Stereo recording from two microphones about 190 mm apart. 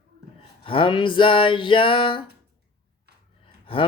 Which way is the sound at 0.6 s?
25° left (ahead or behind).